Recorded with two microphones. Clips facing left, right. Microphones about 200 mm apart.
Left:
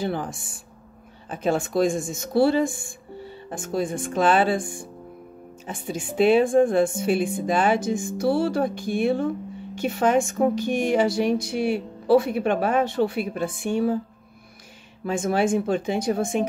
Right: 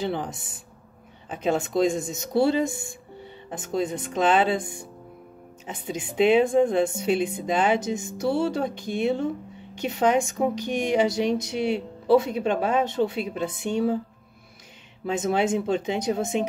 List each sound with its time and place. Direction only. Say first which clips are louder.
0.0 s speech: left 1 dB; 20° right (ahead or behind)
15.1 s speech: left 2 dB; 20° right (ahead or behind)